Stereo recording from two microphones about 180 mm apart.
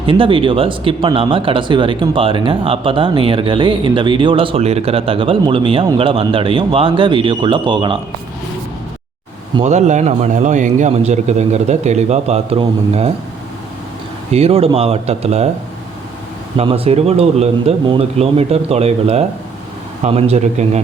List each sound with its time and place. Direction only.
0.0 s speech: 30° right (ahead or behind)
9.6 s a man's voice: 40° right (ahead or behind)
14.3 s a man's voice: 35° right (ahead or behind)
16.6 s a man's voice: 30° right (ahead or behind)